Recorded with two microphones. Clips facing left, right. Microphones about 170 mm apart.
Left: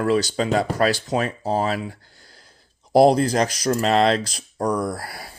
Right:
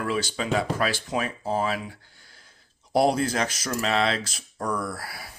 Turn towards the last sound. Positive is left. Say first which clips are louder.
# left 6 dB
turn(degrees=40)  # may be behind; listen again after turning